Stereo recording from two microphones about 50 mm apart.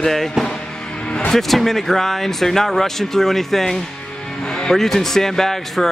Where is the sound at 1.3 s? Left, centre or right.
Centre.